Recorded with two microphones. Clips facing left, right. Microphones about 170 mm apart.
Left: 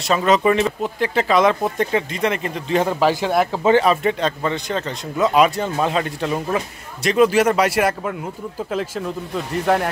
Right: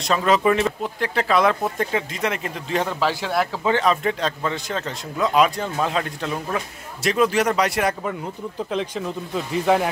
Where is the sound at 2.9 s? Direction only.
15° left (ahead or behind).